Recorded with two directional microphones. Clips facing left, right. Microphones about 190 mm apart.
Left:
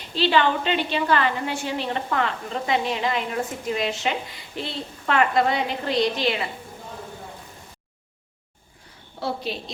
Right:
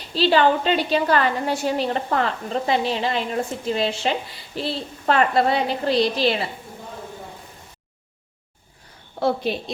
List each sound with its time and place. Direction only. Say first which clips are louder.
0.1 s a woman's voice: right 3 dB; 40° right (ahead or behind)
9.2 s a woman's voice: right 6 dB; 55° right (ahead or behind)